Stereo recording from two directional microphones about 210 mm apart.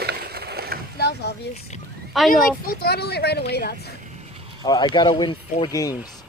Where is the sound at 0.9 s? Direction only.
50° left (ahead or behind).